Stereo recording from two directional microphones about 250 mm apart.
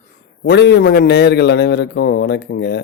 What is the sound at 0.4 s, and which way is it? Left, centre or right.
A man's voice, left.